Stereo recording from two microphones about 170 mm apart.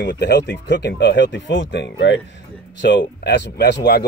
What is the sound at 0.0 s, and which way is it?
Speech, 80° left.